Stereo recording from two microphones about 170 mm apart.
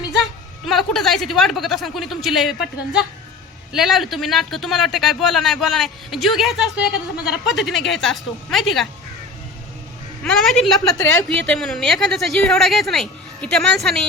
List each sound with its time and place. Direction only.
0.2 s a woman's voice: centre (ahead or behind)
10.2 s speech: centre (ahead or behind)
10.9 s a woman's voice: 15° left (ahead or behind)
11.4 s speech: 5° left (ahead or behind)